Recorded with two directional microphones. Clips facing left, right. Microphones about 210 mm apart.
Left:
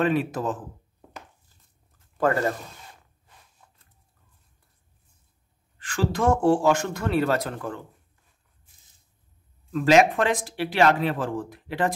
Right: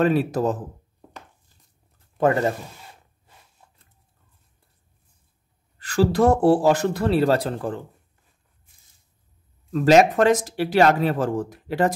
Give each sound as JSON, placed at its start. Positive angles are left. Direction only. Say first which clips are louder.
{"t": 0.0, "sound": "speech", "louder": "right 4 dB", "side_deg": -40}
{"t": 2.1, "sound": "speech", "louder": "right 3 dB", "side_deg": -20}
{"t": 3.6, "sound": "a sound", "louder": "right 2 dB", "side_deg": -25}
{"t": 5.8, "sound": "speech", "louder": "right 7 dB", "side_deg": -40}
{"t": 9.7, "sound": "speech", "louder": "right 3 dB", "side_deg": -40}